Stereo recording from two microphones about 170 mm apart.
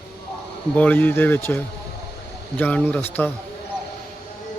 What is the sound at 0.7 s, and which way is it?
Speech, 10° left (ahead or behind).